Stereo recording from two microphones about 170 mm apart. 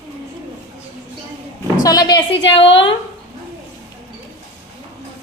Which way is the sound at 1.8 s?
25° left (ahead or behind).